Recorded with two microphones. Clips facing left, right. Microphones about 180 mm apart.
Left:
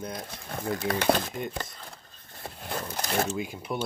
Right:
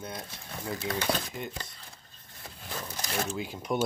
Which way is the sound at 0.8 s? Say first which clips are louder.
Left 6 dB; 55° left (ahead or behind).